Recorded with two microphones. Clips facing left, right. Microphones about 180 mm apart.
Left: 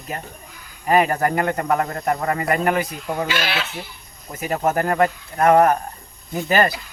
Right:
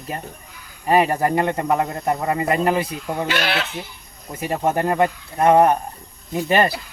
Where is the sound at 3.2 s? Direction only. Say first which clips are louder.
Right 2 dB; 60° right (ahead or behind).